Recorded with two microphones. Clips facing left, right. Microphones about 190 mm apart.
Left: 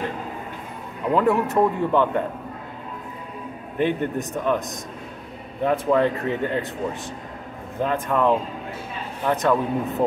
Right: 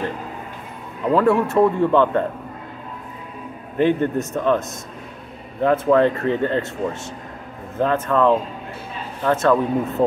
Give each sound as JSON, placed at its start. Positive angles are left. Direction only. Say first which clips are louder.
{"t": 1.1, "sound": "speech", "louder": "right 3 dB", "side_deg": 15}
{"t": 3.7, "sound": "speech", "louder": "right 5 dB", "side_deg": 15}